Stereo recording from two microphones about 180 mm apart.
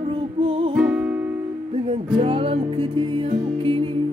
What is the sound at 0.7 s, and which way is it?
Music, 5° right (ahead or behind).